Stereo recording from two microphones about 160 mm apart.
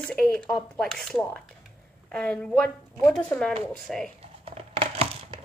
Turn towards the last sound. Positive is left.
turn(degrees=-35)  # may be behind; listen again after turning